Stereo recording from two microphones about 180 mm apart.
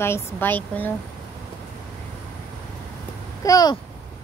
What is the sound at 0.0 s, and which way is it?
Speech, 15° left (ahead or behind).